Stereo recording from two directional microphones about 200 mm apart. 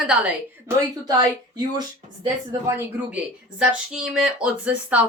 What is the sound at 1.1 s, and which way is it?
Speech, 20° right (ahead or behind).